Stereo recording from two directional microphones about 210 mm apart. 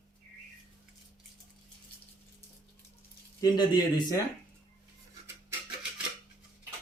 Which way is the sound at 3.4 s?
20° left (ahead or behind).